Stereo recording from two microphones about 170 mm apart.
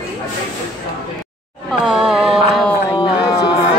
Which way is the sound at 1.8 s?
5° right (ahead or behind).